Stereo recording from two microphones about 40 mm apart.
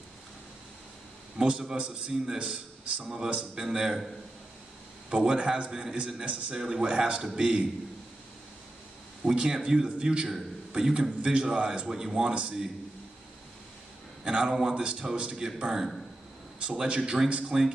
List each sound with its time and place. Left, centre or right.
1.4 s a man's voice: centre
3.6 s a man's voice: centre
5.1 s a man's voice: right
5.9 s a man's voice: right
9.2 s a man's voice: right
11.9 s a man's voice: centre
14.2 s a man's voice: right
16.6 s a man's voice: right